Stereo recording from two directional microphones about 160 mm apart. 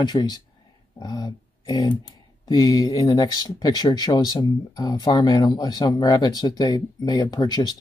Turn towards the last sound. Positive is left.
turn(degrees=25)  # may be behind; listen again after turning